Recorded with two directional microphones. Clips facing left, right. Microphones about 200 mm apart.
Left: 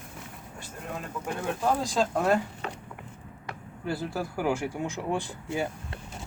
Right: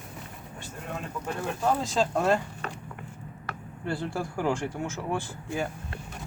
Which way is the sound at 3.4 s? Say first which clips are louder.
Even; 5° left (ahead or behind).